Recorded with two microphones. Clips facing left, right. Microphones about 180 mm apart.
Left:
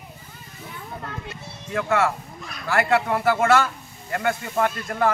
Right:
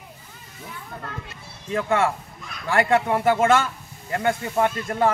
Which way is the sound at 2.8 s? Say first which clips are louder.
Right 1 dB; 25° right (ahead or behind).